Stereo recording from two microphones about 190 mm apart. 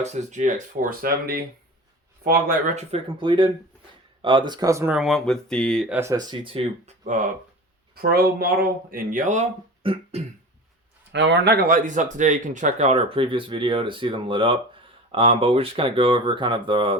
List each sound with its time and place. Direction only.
0.0 s speech: 40° right (ahead or behind); by 4.9 s 15° right (ahead or behind)
4.9 s speech: centre (ahead or behind)
6.0 s speech: 20° right (ahead or behind); by 7.3 s 40° right (ahead or behind)
8.0 s speech: 55° right (ahead or behind); by 10.2 s 30° right (ahead or behind)
11.1 s speech: 65° right (ahead or behind); by 17.0 s 25° right (ahead or behind)